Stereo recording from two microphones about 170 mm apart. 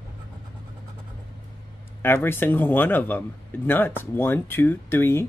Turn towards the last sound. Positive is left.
turn(degrees=15)  # may be behind; listen again after turning